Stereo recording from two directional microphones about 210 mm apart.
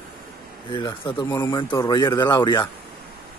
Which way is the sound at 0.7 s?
20° left (ahead or behind).